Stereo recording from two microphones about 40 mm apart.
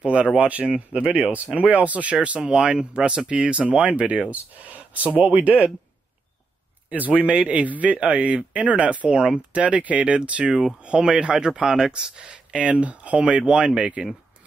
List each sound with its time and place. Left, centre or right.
0.0 s speech: right
2.2 s speech: right
6.9 s speech: right
10.5 s speech: centre
10.8 s speech: right
13.5 s speech: right